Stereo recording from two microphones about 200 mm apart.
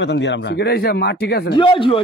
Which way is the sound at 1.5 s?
25° left (ahead or behind).